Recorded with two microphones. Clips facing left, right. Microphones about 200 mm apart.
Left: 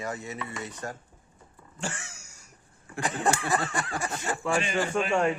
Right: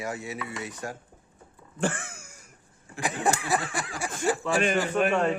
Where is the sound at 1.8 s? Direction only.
55° right (ahead or behind).